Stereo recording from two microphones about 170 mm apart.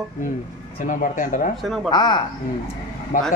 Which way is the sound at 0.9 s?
50° left (ahead or behind).